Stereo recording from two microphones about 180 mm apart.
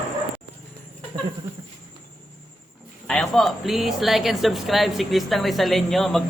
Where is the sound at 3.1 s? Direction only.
Centre (ahead or behind).